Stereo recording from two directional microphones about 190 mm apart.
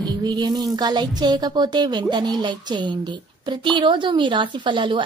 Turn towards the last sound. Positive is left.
turn(degrees=-25)  # may be behind; listen again after turning